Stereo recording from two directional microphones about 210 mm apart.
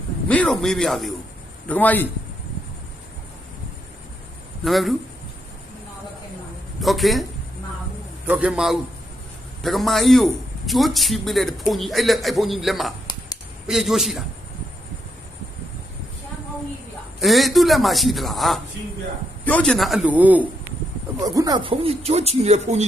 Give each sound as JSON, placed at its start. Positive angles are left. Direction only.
{"t": 0.3, "sound": "a man's voice", "side_deg": 5}
{"t": 4.6, "sound": "a man's voice", "side_deg": 0}
{"t": 6.8, "sound": "a man's voice", "side_deg": 0}
{"t": 8.3, "sound": "a man's voice", "side_deg": -5}
{"t": 13.1, "sound": "a sound", "side_deg": 20}
{"t": 13.7, "sound": "a man's voice", "side_deg": 0}
{"t": 17.2, "sound": "a man's voice", "side_deg": 0}
{"t": 21.3, "sound": "speech", "side_deg": -20}